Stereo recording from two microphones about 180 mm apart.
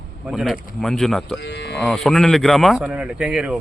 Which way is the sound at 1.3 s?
75° left (ahead or behind).